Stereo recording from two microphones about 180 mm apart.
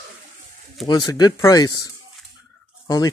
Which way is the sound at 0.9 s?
20° left (ahead or behind).